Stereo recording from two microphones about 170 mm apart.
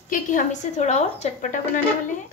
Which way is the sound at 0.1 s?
50° left (ahead or behind).